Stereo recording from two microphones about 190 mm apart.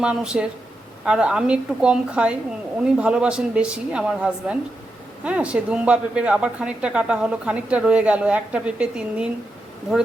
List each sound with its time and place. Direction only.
0.0 s a woman's voice: 5° right (ahead or behind)